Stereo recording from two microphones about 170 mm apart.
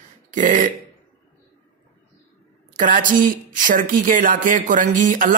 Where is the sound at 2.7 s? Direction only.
50° right (ahead or behind).